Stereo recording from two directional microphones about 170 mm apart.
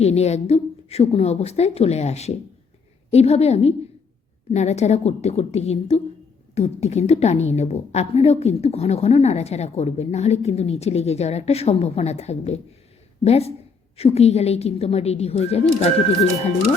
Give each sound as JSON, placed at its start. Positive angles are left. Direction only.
{"t": 0.0, "sound": "a woman's voice", "side_deg": 40}